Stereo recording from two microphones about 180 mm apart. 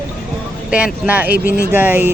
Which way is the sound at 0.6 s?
5° right (ahead or behind).